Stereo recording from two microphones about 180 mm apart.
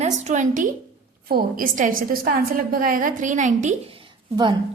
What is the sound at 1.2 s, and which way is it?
A woman's voice, 55° right (ahead or behind).